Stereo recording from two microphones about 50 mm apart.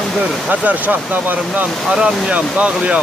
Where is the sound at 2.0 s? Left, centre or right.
Right.